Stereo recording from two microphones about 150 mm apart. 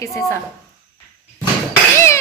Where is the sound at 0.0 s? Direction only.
20° left (ahead or behind).